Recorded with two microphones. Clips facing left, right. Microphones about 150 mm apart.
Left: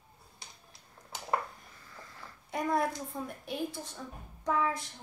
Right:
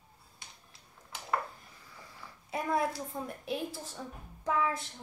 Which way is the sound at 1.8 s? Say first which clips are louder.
Left 1 dB; 10° right (ahead or behind).